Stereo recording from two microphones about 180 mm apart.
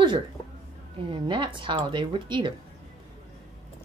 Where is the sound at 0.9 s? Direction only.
30° right (ahead or behind).